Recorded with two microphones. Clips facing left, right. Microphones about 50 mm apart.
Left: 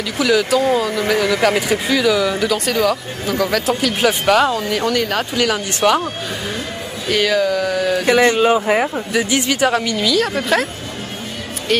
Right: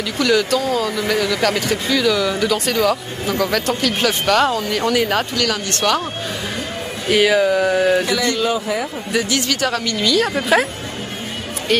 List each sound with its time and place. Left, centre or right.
0.2 s speech: centre
0.6 s speech: centre
4.9 s speech: centre
5.3 s speech: centre
7.1 s speech: centre
8.0 s speech: left
9.2 s speech: left
9.9 s speech: centre